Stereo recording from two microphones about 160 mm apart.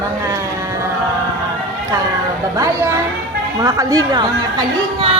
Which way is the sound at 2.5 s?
20° right (ahead or behind).